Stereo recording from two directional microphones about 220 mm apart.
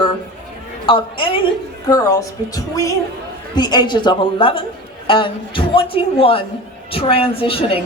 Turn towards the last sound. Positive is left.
turn(degrees=25)  # may be behind; listen again after turning